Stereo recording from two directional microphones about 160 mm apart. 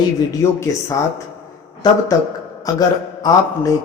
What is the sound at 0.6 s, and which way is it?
Speech, 20° left (ahead or behind).